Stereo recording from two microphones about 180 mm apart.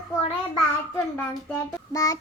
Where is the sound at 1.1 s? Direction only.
15° left (ahead or behind).